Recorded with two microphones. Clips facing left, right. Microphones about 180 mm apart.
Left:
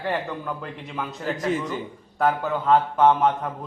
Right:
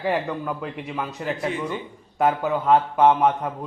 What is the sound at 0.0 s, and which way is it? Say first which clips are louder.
A man's voice: right 3 dB; 5° right (ahead or behind).